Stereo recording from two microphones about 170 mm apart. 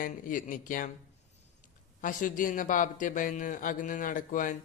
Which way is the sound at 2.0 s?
50° left (ahead or behind).